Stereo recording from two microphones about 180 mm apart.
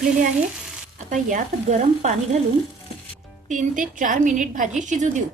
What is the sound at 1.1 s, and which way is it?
Speech, 40° right (ahead or behind).